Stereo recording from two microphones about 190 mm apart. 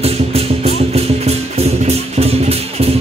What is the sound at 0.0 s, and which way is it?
Music, 30° right (ahead or behind).